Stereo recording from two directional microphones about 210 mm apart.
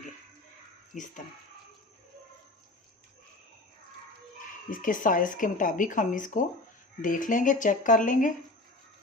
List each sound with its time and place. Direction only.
0.9 s speech: 35° left (ahead or behind)
4.7 s speech: 40° left (ahead or behind)